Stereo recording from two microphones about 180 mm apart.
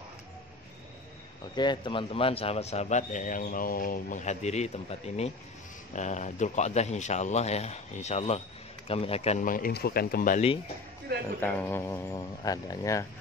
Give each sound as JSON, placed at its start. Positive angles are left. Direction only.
{"t": 1.5, "sound": "a man's voice", "side_deg": 25}
{"t": 11.4, "sound": "speech", "side_deg": 10}